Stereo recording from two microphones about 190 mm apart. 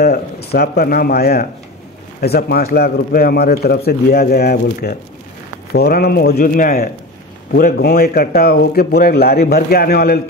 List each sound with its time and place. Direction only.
0.0 s a man's voice: 55° left (ahead or behind)